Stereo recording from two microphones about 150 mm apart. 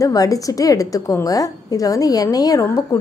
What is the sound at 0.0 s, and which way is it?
A woman's voice, 25° left (ahead or behind).